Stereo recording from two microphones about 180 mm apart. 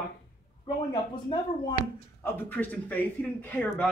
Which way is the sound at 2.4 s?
10° left (ahead or behind).